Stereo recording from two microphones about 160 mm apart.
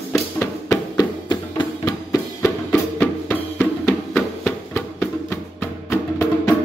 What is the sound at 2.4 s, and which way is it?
Music, 10° left (ahead or behind).